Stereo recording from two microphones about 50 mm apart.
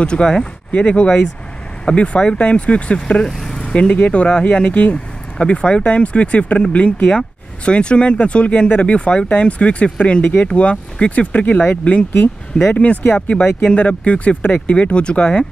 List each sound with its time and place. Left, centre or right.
0.0 s speech: centre
0.7 s speech: left
3.3 s vehicle: centre
4.1 s speech: left
12.5 s speech: centre